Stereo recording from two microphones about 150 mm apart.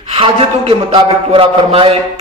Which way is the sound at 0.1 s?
40° right (ahead or behind).